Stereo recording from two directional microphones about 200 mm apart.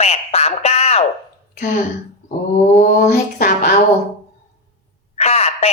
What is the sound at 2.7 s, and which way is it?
Speech, 40° left (ahead or behind).